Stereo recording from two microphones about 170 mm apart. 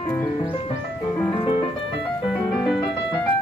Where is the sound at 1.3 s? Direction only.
30° left (ahead or behind).